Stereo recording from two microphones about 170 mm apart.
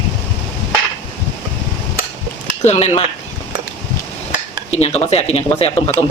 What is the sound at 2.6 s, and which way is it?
Speech, 40° left (ahead or behind).